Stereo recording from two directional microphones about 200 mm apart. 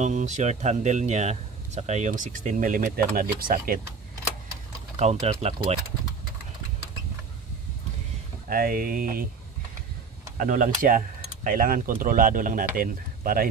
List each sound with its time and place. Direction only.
0.0 s speech: 35° right (ahead or behind)
4.9 s speech: 30° right (ahead or behind)
8.5 s speech: 45° right (ahead or behind)
10.3 s speech: 40° right (ahead or behind)